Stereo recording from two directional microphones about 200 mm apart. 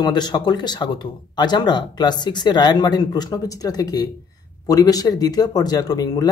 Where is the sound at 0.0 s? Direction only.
20° left (ahead or behind).